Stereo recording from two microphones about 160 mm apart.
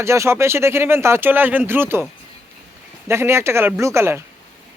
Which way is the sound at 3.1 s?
15° right (ahead or behind).